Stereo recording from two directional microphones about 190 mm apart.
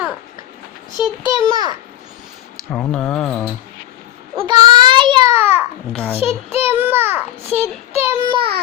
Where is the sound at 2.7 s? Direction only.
5° left (ahead or behind).